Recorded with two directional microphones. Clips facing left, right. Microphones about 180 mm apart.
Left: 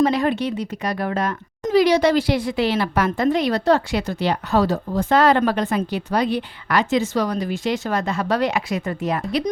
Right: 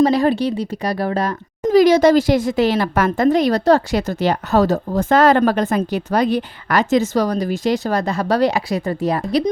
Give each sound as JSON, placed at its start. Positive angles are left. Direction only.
{"t": 0.0, "sound": "a woman's voice", "side_deg": -35}